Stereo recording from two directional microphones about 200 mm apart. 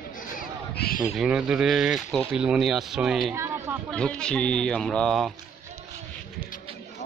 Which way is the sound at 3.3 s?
15° right (ahead or behind).